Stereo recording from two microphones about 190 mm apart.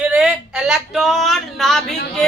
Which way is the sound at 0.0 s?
5° right (ahead or behind).